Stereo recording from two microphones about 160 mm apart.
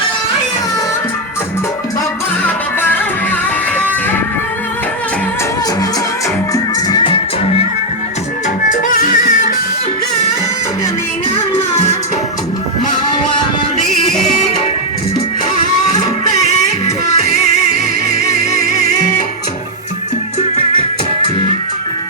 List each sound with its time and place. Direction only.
2.4 s music: 10° left (ahead or behind)
6.5 s music: 25° left (ahead or behind)
8.7 s music: 55° left (ahead or behind)